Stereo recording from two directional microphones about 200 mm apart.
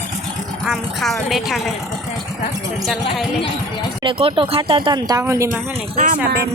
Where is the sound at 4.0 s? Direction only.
25° right (ahead or behind).